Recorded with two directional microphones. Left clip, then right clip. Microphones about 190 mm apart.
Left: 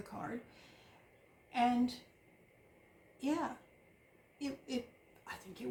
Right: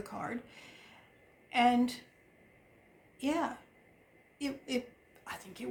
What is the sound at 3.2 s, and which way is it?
A woman's voice, 50° right (ahead or behind).